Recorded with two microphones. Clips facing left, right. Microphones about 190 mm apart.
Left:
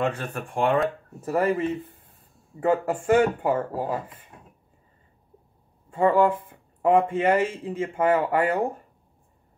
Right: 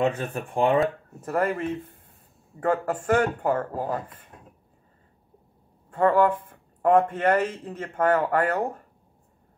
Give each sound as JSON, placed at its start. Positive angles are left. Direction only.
{"t": 0.0, "sound": "speech", "side_deg": -20}
{"t": 0.7, "sound": "speech", "side_deg": 5}
{"t": 5.9, "sound": "speech", "side_deg": 10}